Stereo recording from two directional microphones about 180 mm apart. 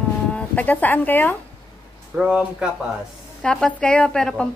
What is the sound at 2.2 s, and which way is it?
A woman's voice, 5° right (ahead or behind).